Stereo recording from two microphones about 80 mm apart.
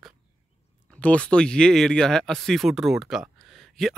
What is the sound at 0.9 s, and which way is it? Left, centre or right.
Speech, centre.